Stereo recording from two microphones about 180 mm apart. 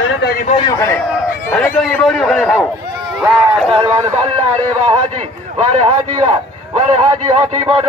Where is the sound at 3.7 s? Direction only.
30° right (ahead or behind).